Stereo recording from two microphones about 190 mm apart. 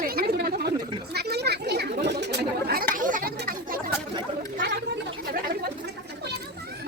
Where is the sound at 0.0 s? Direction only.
50° right (ahead or behind).